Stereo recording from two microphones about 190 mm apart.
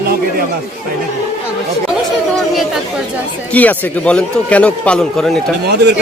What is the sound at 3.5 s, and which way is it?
A man's voice, 10° left (ahead or behind).